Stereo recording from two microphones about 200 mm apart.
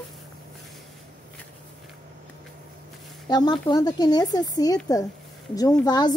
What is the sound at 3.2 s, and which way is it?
Speech, 20° left (ahead or behind).